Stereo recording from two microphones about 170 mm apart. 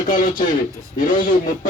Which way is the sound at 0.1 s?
50° left (ahead or behind).